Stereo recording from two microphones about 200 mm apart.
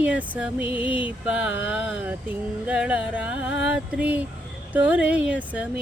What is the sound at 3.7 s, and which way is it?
Music, 5° right (ahead or behind).